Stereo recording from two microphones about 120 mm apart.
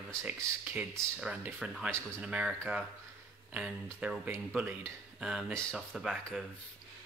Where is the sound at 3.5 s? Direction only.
10° right (ahead or behind).